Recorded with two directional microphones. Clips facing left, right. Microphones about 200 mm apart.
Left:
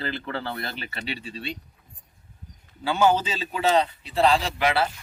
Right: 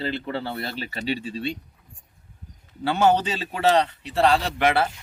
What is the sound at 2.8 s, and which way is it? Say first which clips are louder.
A man's voice: right 1 dB; 65° right (ahead or behind).